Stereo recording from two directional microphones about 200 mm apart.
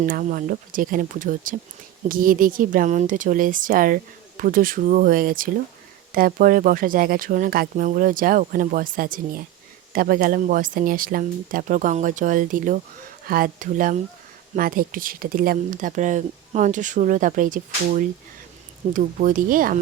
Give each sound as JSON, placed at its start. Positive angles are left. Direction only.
{"t": 0.0, "sound": "speech", "side_deg": -45}